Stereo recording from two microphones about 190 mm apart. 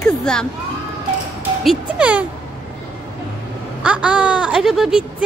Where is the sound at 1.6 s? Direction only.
5° right (ahead or behind).